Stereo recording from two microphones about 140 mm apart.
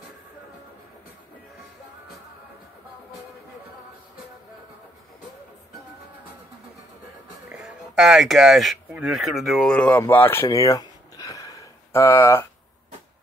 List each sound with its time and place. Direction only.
7.5 s speech: 5° right (ahead or behind); by 12.4 s 15° left (ahead or behind)